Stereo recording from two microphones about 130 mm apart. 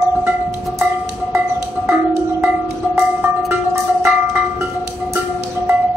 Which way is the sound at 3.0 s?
15° right (ahead or behind).